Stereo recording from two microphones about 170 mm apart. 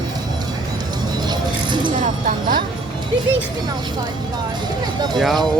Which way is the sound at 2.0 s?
50° right (ahead or behind).